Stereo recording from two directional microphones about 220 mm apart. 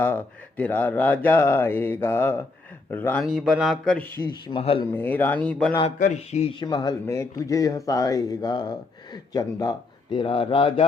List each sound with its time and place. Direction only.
0.0 s a man's voice: 5° left (ahead or behind)
4.4 s a man's voice: 25° left (ahead or behind)
4.9 s speech: 10° left (ahead or behind)
6.0 s a man's voice: 30° left (ahead or behind)